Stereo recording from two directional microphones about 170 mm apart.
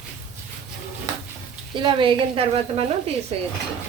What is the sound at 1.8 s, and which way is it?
A woman's voice, 30° right (ahead or behind).